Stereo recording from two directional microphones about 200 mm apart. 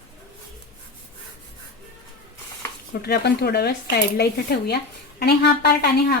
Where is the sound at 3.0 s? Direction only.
55° left (ahead or behind).